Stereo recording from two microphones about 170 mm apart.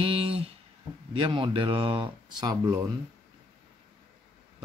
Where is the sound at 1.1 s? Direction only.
30° right (ahead or behind).